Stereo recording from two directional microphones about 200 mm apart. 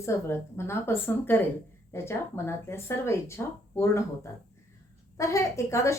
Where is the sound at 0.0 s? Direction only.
15° left (ahead or behind).